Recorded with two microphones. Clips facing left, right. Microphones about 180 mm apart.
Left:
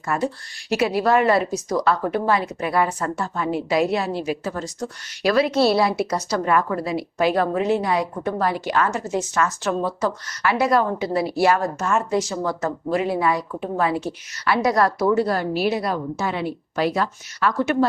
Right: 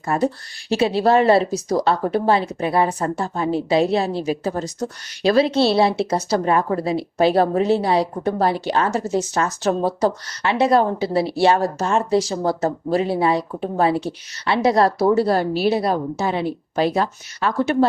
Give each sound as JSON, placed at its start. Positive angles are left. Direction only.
{"t": 0.0, "sound": "a woman's voice", "side_deg": -30}